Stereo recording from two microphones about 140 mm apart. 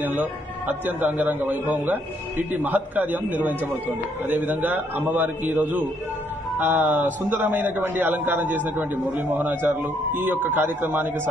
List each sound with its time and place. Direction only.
0.0 s a man's voice: 15° right (ahead or behind)